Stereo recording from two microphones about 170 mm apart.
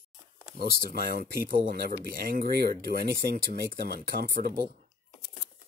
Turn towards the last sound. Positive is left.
turn(degrees=-65)  # may be behind; listen again after turning